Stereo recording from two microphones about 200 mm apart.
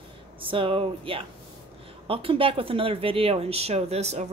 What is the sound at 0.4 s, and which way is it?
Speech, 25° right (ahead or behind).